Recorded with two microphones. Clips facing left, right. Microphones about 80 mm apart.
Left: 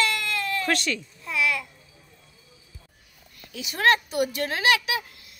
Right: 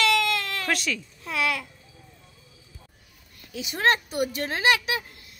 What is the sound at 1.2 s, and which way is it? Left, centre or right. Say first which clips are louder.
Babbling: left 1 dB; right.